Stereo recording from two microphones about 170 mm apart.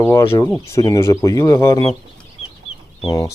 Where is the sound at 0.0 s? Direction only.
15° left (ahead or behind).